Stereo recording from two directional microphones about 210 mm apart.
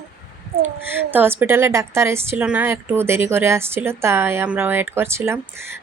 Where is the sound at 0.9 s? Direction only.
10° right (ahead or behind).